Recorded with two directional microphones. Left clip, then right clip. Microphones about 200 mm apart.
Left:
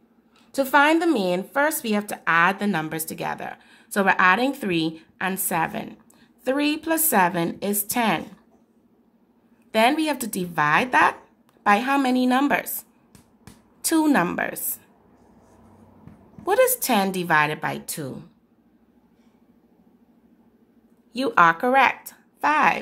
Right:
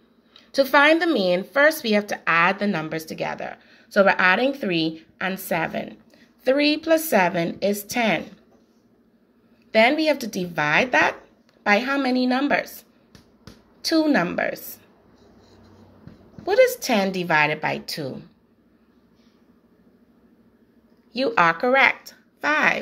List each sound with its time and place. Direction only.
0.3 s speech: 15° left (ahead or behind)
9.7 s speech: 20° left (ahead or behind)
13.8 s speech: 25° left (ahead or behind)
16.4 s speech: 25° left (ahead or behind)
21.1 s a woman's voice: 20° left (ahead or behind)